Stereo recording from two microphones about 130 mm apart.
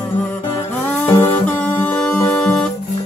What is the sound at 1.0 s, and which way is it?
Music, 15° left (ahead or behind).